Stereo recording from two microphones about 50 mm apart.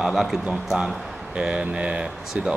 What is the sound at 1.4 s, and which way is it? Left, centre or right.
Speech, centre.